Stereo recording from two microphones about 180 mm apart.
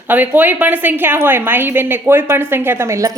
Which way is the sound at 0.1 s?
10° right (ahead or behind).